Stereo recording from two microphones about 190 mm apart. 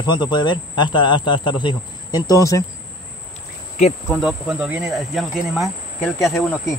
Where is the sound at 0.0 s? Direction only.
25° left (ahead or behind).